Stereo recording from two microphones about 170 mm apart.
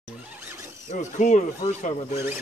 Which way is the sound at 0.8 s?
45° left (ahead or behind).